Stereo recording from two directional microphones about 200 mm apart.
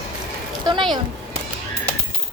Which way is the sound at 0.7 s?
20° right (ahead or behind).